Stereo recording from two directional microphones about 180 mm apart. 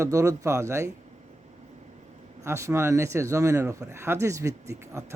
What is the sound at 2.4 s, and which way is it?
Speech, 15° right (ahead or behind).